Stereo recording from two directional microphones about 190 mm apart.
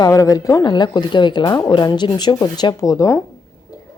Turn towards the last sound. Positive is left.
turn(degrees=15)  # may be behind; listen again after turning